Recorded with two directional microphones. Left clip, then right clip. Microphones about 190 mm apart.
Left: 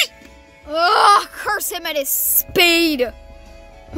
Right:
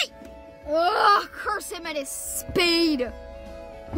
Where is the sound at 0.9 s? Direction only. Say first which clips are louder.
Left 9 dB; 10° left (ahead or behind).